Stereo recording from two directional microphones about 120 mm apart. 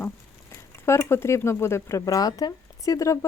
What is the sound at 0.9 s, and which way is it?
Speech, 20° left (ahead or behind).